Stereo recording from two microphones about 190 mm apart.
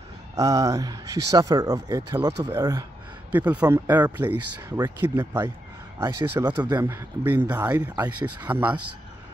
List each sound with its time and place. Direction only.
0.4 s speech: 15° right (ahead or behind)
3.3 s speech: 10° right (ahead or behind)